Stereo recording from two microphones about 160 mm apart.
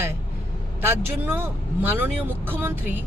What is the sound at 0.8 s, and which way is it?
Speech, 10° right (ahead or behind).